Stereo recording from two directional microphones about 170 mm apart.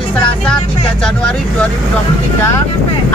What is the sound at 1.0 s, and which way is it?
Speech, 5° left (ahead or behind).